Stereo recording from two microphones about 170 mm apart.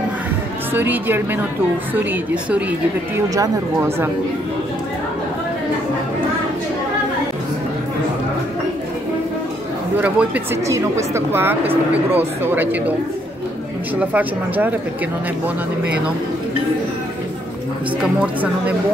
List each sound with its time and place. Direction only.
0.7 s speech: 10° right (ahead or behind)
3.3 s speech: 15° right (ahead or behind)
9.9 s speech: 10° right (ahead or behind)
13.9 s speech: 10° right (ahead or behind)
18.2 s speech: 10° right (ahead or behind)